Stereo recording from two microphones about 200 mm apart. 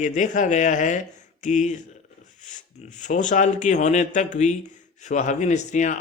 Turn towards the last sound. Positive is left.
turn(degrees=40)  # may be behind; listen again after turning